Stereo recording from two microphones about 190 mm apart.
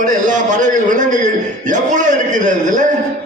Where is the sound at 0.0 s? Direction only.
40° right (ahead or behind).